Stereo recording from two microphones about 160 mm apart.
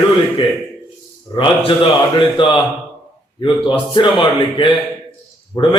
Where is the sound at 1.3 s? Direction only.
30° left (ahead or behind).